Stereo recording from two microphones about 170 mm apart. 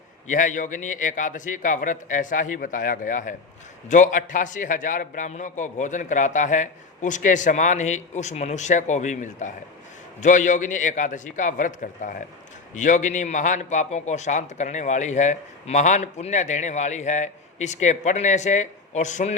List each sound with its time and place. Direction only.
0.3 s a man's voice: 50° left (ahead or behind)